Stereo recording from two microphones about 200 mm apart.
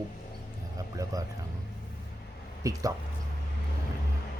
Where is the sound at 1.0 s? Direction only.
15° right (ahead or behind).